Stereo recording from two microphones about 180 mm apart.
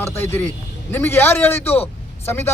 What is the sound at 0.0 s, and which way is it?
A man's voice, 15° left (ahead or behind).